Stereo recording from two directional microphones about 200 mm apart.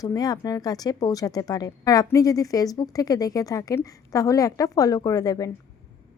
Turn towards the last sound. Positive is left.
turn(degrees=20)  # may be behind; listen again after turning